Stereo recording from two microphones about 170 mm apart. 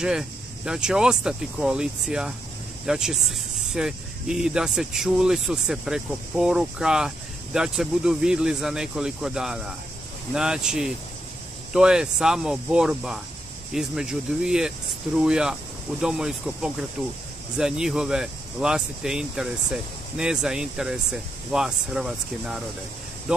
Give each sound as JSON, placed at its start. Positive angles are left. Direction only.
{"t": 0.0, "sound": "speech", "side_deg": -5}